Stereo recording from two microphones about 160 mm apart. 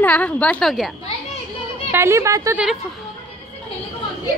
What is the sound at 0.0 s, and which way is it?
Speech, 10° left (ahead or behind).